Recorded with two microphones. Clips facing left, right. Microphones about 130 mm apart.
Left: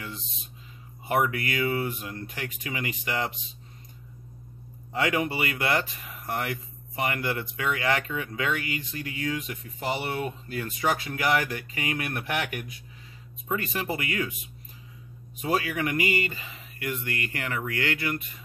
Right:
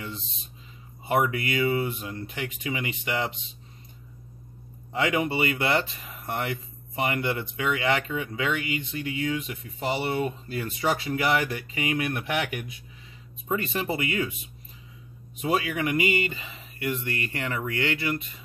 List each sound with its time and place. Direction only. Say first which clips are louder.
1.0 s speech: right 1 dB; 20° right (ahead or behind)
4.9 s speech: right 1 dB; 20° right (ahead or behind)
15.4 s speech: right 1 dB; 20° right (ahead or behind)